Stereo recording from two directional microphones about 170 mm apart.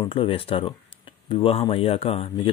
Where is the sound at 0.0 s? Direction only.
30° left (ahead or behind).